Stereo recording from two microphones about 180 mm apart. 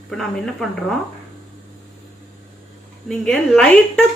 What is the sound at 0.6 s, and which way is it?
Speech, 5° left (ahead or behind).